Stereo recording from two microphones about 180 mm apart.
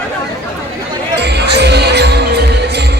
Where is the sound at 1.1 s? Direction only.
70° right (ahead or behind).